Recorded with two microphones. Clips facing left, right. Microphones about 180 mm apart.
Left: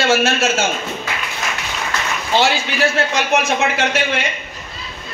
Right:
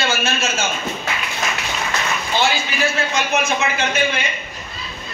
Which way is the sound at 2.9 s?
75° left (ahead or behind).